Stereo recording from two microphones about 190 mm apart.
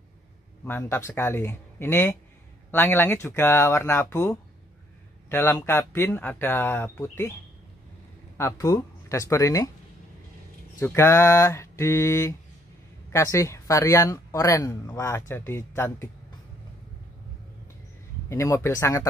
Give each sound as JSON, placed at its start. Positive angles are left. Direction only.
{"t": 0.7, "sound": "speech", "side_deg": 10}
{"t": 8.4, "sound": "speech", "side_deg": 15}
{"t": 10.8, "sound": "speech", "side_deg": 15}
{"t": 18.3, "sound": "speech", "side_deg": 15}